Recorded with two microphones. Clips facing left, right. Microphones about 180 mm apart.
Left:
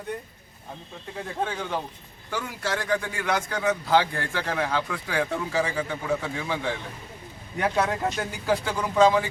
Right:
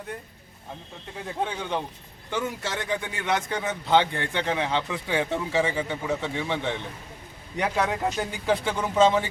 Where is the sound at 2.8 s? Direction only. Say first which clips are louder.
Left 2 dB; 25° right (ahead or behind).